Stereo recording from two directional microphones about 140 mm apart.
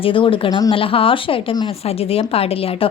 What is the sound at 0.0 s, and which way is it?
A woman's voice, 40° left (ahead or behind).